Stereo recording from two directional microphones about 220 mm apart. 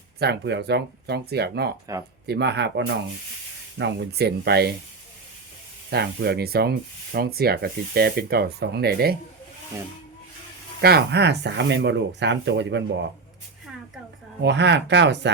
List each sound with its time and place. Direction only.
0.2 s speech: 50° right (ahead or behind)
5.9 s speech: 45° right (ahead or behind)
10.8 s speech: 45° right (ahead or behind)
14.4 s speech: 50° right (ahead or behind)